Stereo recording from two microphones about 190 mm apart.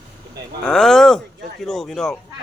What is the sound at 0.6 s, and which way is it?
Speech, 5° left (ahead or behind).